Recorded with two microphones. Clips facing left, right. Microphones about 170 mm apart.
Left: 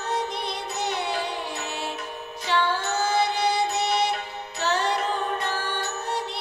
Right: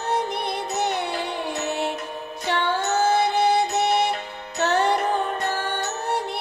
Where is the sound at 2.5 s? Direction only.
55° right (ahead or behind).